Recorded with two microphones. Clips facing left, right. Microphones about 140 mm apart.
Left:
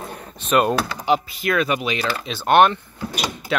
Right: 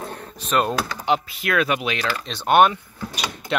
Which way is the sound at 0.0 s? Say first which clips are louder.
Right 1 dB; 5° left (ahead or behind).